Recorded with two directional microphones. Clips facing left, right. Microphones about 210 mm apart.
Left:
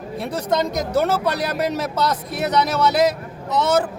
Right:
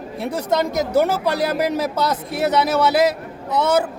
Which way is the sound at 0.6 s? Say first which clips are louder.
Right 5 dB; 10° right (ahead or behind).